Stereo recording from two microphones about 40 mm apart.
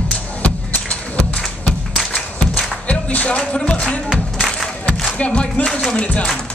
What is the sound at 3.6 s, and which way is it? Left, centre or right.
Speech, left.